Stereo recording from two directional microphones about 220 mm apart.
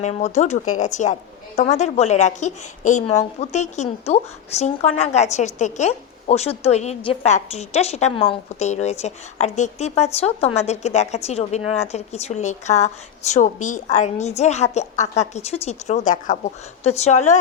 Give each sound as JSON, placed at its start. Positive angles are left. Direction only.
{"t": 0.0, "sound": "a woman's voice", "side_deg": 30}